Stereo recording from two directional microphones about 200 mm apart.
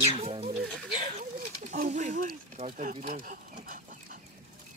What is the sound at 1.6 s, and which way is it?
Speech, 35° right (ahead or behind).